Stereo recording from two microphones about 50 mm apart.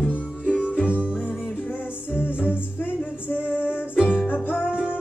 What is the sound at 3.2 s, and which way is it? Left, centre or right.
Female singing, left.